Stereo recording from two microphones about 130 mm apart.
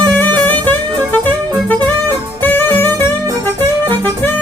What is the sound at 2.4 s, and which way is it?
Music, 15° left (ahead or behind).